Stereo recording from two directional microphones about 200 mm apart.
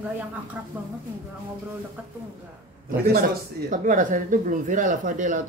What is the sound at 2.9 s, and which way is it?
Speech, 45° right (ahead or behind).